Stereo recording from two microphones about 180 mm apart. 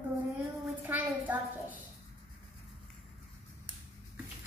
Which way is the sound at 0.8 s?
10° right (ahead or behind).